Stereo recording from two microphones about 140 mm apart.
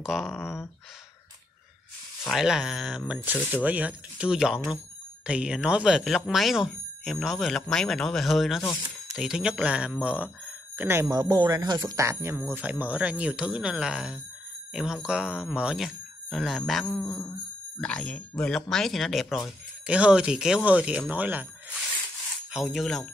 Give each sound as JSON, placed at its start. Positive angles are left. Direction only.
{"t": 0.0, "sound": "speech", "side_deg": 0}
{"t": 0.4, "sound": "a sound", "side_deg": 15}
{"t": 2.2, "sound": "speech", "side_deg": -5}
{"t": 11.1, "sound": "speech", "side_deg": -30}
{"t": 17.0, "sound": "a sound", "side_deg": 20}
{"t": 17.7, "sound": "speech", "side_deg": 5}
{"t": 22.5, "sound": "speech", "side_deg": 0}